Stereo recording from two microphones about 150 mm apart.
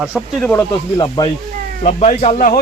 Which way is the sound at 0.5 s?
25° left (ahead or behind).